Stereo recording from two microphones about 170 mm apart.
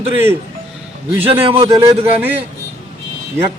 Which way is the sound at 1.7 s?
20° right (ahead or behind).